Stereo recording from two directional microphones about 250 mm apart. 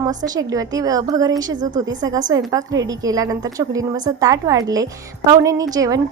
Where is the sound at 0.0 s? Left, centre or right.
Centre.